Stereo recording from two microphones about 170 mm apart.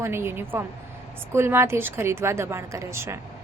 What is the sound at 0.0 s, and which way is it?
A woman's voice, 15° right (ahead or behind).